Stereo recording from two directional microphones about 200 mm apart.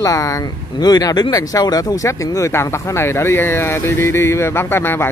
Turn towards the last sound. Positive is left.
turn(degrees=10)  # may be behind; listen again after turning